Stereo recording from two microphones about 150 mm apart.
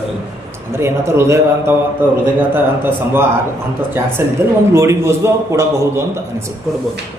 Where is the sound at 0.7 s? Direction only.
15° right (ahead or behind).